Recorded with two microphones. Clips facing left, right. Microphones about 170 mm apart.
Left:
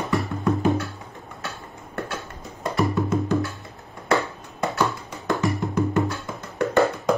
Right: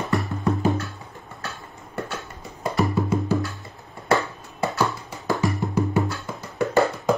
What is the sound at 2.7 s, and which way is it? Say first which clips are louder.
Music: even; centre (ahead or behind).